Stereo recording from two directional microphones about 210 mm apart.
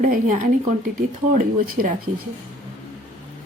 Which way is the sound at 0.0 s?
40° right (ahead or behind).